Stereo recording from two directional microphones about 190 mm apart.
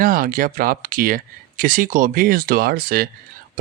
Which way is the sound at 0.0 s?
50° right (ahead or behind).